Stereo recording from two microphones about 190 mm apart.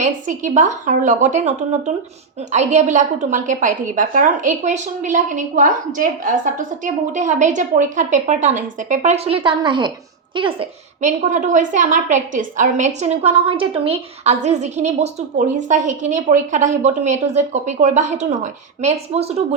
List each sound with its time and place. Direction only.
0.0 s a woman's voice: 40° right (ahead or behind)
11.0 s a woman's voice: 40° right (ahead or behind)